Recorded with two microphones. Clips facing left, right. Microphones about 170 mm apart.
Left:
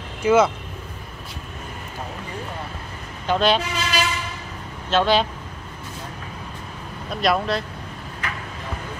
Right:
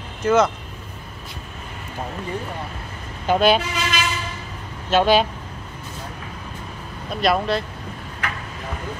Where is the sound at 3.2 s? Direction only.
10° right (ahead or behind).